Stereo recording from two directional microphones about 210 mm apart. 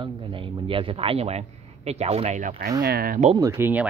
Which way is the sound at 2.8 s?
45° right (ahead or behind).